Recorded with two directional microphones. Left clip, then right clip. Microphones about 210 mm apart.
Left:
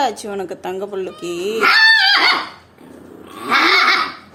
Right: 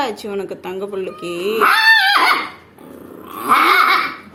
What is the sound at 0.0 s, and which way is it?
Speech, 25° left (ahead or behind).